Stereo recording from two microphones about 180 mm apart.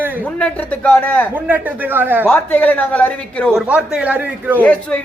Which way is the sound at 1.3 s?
10° right (ahead or behind).